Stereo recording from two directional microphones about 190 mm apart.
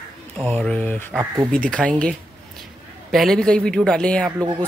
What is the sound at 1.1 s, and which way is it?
Speech, 15° right (ahead or behind).